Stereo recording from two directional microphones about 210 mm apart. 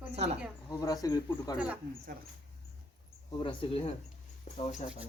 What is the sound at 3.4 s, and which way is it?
Speech, 25° left (ahead or behind).